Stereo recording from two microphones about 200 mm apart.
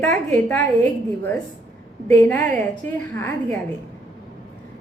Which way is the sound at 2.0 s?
10° left (ahead or behind).